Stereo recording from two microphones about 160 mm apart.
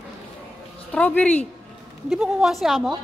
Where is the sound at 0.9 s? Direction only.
10° left (ahead or behind).